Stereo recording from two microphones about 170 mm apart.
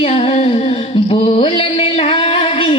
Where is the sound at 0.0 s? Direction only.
35° left (ahead or behind).